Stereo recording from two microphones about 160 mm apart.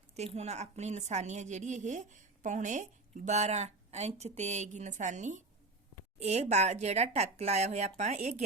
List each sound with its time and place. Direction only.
0.1 s a woman's voice: 40° right (ahead or behind)